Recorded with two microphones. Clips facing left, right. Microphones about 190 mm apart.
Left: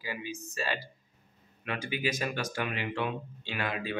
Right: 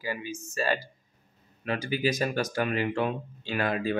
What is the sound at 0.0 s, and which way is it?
Speech, 45° right (ahead or behind).